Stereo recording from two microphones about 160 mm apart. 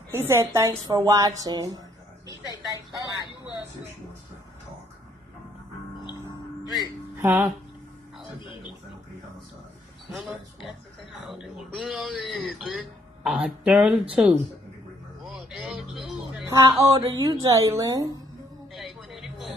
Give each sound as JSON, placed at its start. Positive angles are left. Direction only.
{"t": 0.1, "sound": "a woman's voice", "side_deg": -15}
{"t": 7.2, "sound": "speech", "side_deg": -10}
{"t": 11.2, "sound": "speech", "side_deg": -5}
{"t": 15.2, "sound": "a sound", "side_deg": 0}
{"t": 16.4, "sound": "a woman's voice", "side_deg": -20}
{"t": 18.7, "sound": "a sound", "side_deg": 0}